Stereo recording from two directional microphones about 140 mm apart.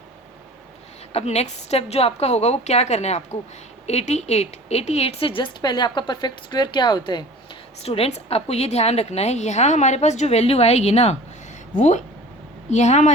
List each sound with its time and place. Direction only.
1.1 s a woman's voice: 50° left (ahead or behind); by 7.3 s 30° left (ahead or behind)
7.9 s a woman's voice: 45° left (ahead or behind)